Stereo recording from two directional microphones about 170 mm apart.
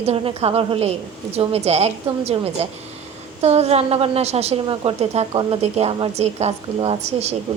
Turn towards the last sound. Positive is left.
turn(degrees=-40)  # may be behind; listen again after turning